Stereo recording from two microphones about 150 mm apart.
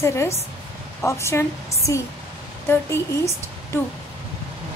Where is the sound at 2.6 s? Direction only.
15° left (ahead or behind).